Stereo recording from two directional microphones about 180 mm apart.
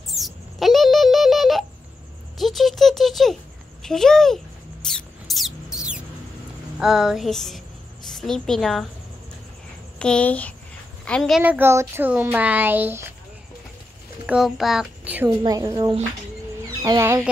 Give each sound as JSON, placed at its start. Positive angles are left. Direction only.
{"t": 0.1, "sound": "a sound", "side_deg": 0}
{"t": 4.8, "sound": "rodents", "side_deg": 0}
{"t": 6.8, "sound": "a sound", "side_deg": -5}
{"t": 8.1, "sound": "a woman's voice", "side_deg": 0}
{"t": 9.9, "sound": "speech", "side_deg": 5}
{"t": 11.1, "sound": "a sound", "side_deg": 0}
{"t": 11.4, "sound": "speech", "side_deg": -10}
{"t": 14.2, "sound": "a child's voice", "side_deg": -5}
{"t": 15.2, "sound": "a woman's voice", "side_deg": -20}